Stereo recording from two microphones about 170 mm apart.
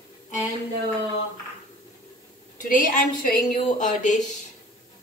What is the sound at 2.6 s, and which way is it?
A woman's voice, 55° left (ahead or behind).